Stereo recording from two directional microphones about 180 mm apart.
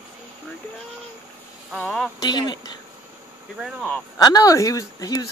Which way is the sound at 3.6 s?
Centre (ahead or behind).